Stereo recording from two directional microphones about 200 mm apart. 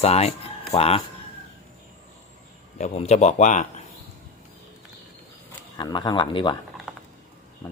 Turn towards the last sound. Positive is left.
turn(degrees=25)  # may be behind; listen again after turning